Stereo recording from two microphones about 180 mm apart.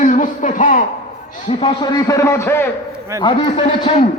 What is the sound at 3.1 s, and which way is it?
Speech, 25° left (ahead or behind).